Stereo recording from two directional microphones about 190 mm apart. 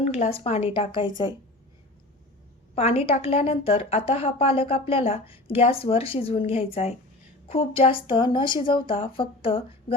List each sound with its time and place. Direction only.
0.0 s a woman's voice: 35° left (ahead or behind)
2.7 s a woman's voice: 30° left (ahead or behind)